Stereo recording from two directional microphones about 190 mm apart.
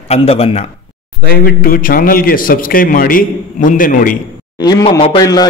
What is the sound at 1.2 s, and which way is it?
A man's voice, 50° left (ahead or behind).